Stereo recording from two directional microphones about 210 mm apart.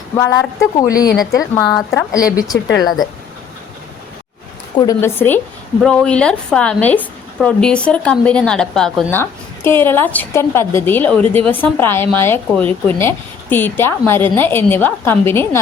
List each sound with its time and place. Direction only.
0.2 s a woman's voice: 15° left (ahead or behind)
1.6 s speech: centre (ahead or behind)
2.1 s a woman's voice: 15° left (ahead or behind)
4.8 s a woman's voice: 15° left (ahead or behind)